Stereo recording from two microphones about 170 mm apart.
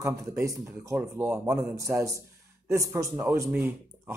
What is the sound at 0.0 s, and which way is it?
A man's voice, 15° right (ahead or behind).